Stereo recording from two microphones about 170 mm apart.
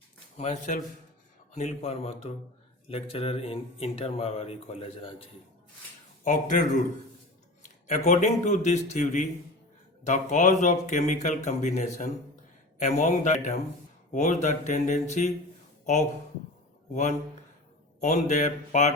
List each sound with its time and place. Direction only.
0.3 s speech: 45° left (ahead or behind)
6.2 s speech: 50° left (ahead or behind)
16.9 s speech: 45° left (ahead or behind)